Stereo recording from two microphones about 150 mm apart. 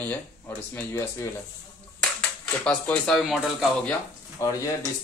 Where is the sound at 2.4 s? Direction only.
10° left (ahead or behind).